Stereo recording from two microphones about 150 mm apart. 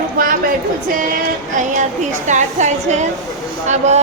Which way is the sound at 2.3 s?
55° right (ahead or behind).